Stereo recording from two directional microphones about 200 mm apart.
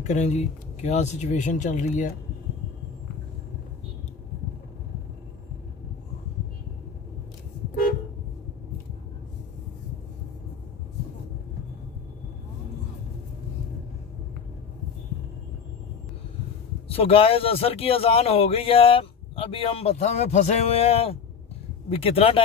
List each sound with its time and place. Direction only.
0.0 s speech: 35° left (ahead or behind)
16.8 s a man's voice: 30° left (ahead or behind)